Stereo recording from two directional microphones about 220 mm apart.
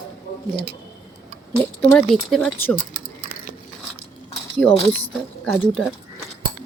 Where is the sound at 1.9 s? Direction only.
5° left (ahead or behind).